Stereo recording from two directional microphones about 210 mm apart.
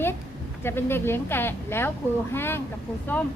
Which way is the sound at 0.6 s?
10° left (ahead or behind).